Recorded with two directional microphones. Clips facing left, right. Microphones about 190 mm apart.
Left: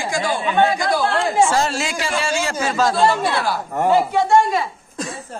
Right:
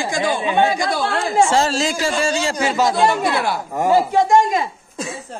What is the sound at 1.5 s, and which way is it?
Speech, 35° right (ahead or behind).